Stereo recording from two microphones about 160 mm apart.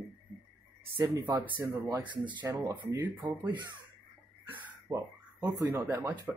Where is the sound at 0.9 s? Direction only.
20° right (ahead or behind).